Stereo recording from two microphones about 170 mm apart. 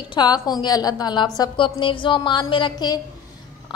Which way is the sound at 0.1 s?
25° left (ahead or behind).